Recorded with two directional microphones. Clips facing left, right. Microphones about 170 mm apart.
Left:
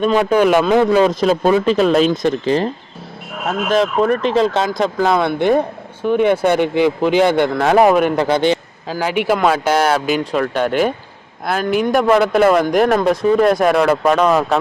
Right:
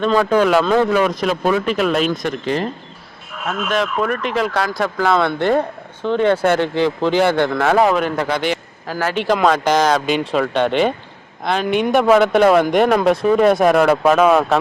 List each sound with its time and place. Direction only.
0.0 s speech: 15° left (ahead or behind)
0.9 s speech: 30° left (ahead or behind)
8.1 s a man's voice: 30° left (ahead or behind)
8.9 s speech: 15° left (ahead or behind); by 14.6 s 5° right (ahead or behind)